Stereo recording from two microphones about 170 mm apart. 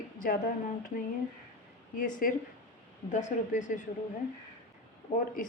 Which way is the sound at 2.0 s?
55° left (ahead or behind).